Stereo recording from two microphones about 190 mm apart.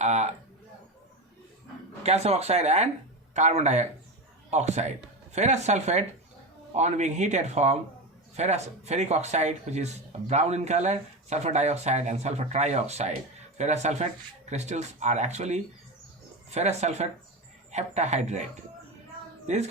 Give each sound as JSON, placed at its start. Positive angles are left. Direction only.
{"t": 0.0, "sound": "a sound", "side_deg": -35}
{"t": 2.0, "sound": "speech", "side_deg": -35}
{"t": 19.5, "sound": "speech", "side_deg": -35}